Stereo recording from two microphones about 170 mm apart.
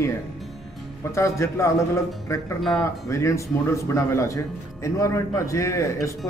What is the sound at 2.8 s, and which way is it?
A man's voice, 15° left (ahead or behind).